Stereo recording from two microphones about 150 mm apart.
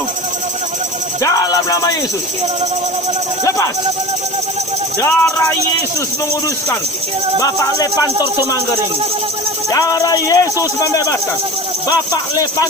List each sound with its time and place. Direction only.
1.2 s music: 25° left (ahead or behind)
4.9 s speech: 15° left (ahead or behind)
7.3 s speech: 25° left (ahead or behind)
9.6 s speech: 25° left (ahead or behind)